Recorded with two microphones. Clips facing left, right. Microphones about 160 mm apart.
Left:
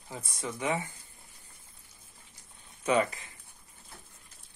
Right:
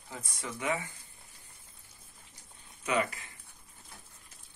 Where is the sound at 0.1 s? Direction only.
20° left (ahead or behind).